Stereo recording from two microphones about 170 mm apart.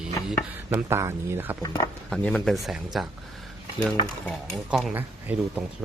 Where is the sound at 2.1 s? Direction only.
5° left (ahead or behind).